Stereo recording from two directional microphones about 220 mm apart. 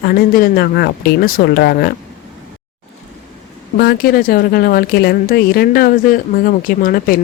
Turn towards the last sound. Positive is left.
turn(degrees=40)  # may be behind; listen again after turning